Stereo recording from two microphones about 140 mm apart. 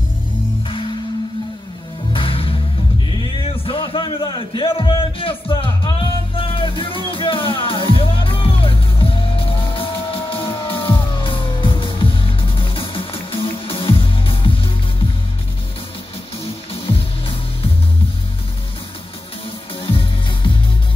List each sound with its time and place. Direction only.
2.1 s music: 40° left (ahead or behind)
3.3 s speech: 40° left (ahead or behind)
5.5 s music: 35° left (ahead or behind)
19.8 s music: 40° left (ahead or behind)